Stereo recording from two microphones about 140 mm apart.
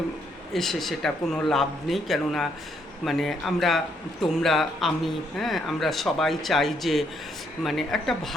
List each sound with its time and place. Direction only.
0.5 s a man's voice: centre (ahead or behind)